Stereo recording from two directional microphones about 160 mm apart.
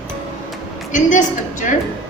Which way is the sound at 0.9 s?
55° left (ahead or behind).